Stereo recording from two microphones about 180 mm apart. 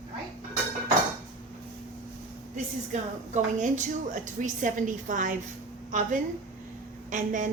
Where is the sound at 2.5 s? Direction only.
40° right (ahead or behind).